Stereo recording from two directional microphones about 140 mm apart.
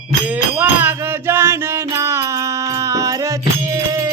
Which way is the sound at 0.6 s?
15° right (ahead or behind).